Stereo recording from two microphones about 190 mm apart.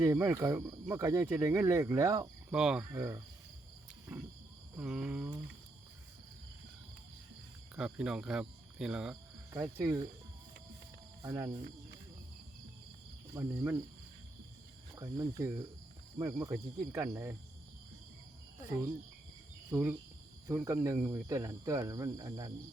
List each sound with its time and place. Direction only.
0.0 s speech: 15° right (ahead or behind)
2.5 s a sound: 5° right (ahead or behind)
2.9 s speech: 15° right (ahead or behind)
4.8 s a sound: 5° right (ahead or behind)
7.8 s speech: 5° right (ahead or behind)
11.2 s speech: 15° right (ahead or behind)
13.3 s speech: 15° right (ahead or behind)
14.9 s speech: 20° right (ahead or behind)
19.7 s speech: 15° right (ahead or behind)